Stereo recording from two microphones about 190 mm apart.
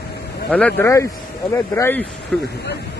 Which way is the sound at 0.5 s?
10° left (ahead or behind).